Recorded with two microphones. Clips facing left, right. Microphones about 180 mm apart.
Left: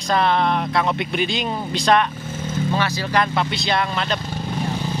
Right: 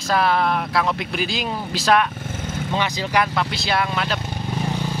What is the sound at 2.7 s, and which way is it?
Speech, 15° right (ahead or behind).